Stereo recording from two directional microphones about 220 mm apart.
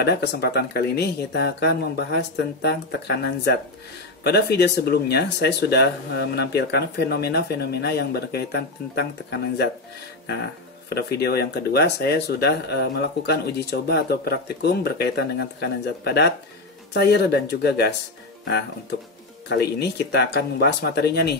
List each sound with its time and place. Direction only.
0.0 s speech: 50° left (ahead or behind)
10.9 s speech: 45° left (ahead or behind)
19.5 s speech: 45° left (ahead or behind)